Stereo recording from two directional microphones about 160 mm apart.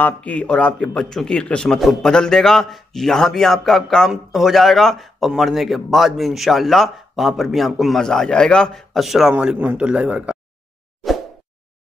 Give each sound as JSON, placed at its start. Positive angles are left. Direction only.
{"t": 0.0, "sound": "a man's voice", "side_deg": 10}